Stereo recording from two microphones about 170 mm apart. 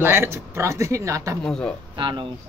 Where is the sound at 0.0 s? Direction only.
15° right (ahead or behind).